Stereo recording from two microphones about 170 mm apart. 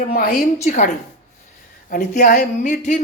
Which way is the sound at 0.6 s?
45° left (ahead or behind).